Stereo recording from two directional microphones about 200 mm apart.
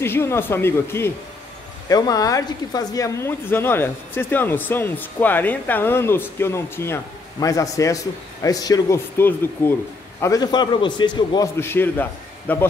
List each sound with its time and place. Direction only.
0.0 s speech: 10° left (ahead or behind)